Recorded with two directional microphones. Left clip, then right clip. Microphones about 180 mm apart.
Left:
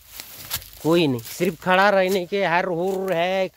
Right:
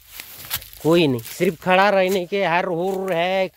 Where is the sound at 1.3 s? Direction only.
15° right (ahead or behind); by 3.5 s 35° right (ahead or behind).